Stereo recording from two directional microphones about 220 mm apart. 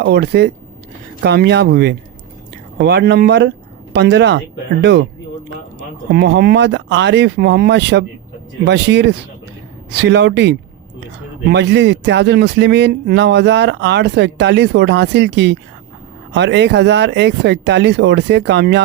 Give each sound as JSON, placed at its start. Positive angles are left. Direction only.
{"t": 0.0, "sound": "speech", "side_deg": -50}
{"t": 6.1, "sound": "speech", "side_deg": -50}